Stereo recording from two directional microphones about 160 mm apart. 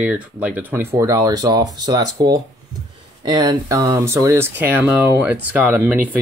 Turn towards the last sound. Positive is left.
turn(degrees=-10)  # may be behind; listen again after turning